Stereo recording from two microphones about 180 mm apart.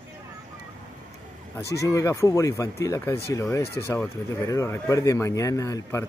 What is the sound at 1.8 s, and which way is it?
Speech, 15° left (ahead or behind).